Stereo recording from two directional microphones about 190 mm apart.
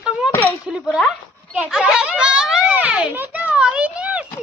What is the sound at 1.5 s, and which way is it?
Children playing, 5° right (ahead or behind).